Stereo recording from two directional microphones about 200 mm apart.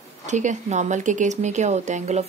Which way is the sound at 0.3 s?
35° right (ahead or behind).